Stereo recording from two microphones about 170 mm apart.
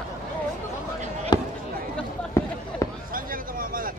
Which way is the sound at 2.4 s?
15° left (ahead or behind).